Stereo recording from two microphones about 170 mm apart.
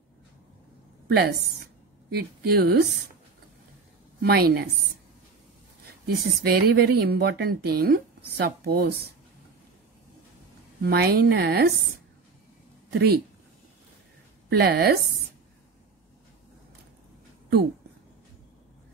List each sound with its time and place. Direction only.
1.0 s a woman's voice: 70° right (ahead or behind)
4.2 s a woman's voice: 65° right (ahead or behind)
6.0 s speech: 65° right (ahead or behind)
10.8 s speech: 70° right (ahead or behind)
12.9 s speech: 70° right (ahead or behind)
14.6 s speech: 70° right (ahead or behind)